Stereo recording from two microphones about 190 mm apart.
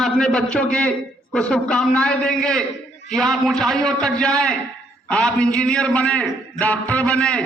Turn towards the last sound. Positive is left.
turn(degrees=5)  # may be behind; listen again after turning